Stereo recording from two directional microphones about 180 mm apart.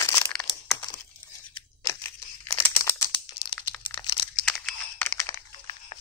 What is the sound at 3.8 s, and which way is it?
Crumpling, 25° left (ahead or behind).